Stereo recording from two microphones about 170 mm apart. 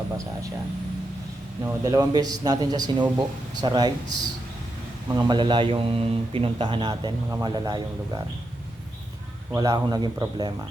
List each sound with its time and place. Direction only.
1.6 s a man's voice: 20° right (ahead or behind)
9.6 s a man's voice: 25° right (ahead or behind)